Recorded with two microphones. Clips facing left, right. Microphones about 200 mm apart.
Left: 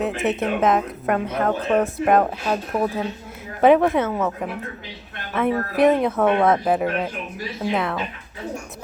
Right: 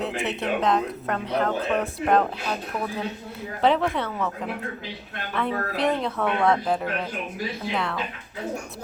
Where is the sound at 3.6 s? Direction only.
20° left (ahead or behind).